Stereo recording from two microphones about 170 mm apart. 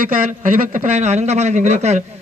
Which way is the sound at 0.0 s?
55° right (ahead or behind).